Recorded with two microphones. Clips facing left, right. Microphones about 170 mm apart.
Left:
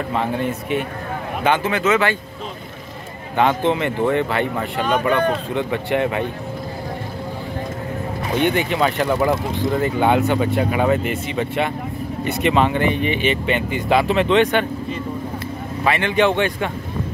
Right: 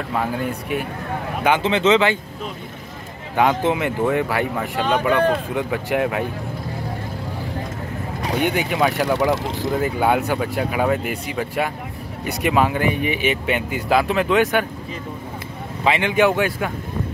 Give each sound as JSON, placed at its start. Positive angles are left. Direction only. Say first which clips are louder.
{"t": 0.1, "sound": "speech", "louder": "even", "side_deg": 0}
{"t": 1.4, "sound": "speech", "louder": "right 1 dB", "side_deg": -15}
{"t": 3.3, "sound": "speech", "louder": "left 1 dB", "side_deg": -10}
{"t": 8.4, "sound": "speech", "louder": "left 2 dB", "side_deg": -10}
{"t": 15.8, "sound": "speech", "louder": "even", "side_deg": -15}